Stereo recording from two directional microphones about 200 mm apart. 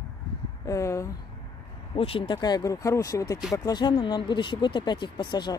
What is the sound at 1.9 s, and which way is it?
Speech, 30° left (ahead or behind).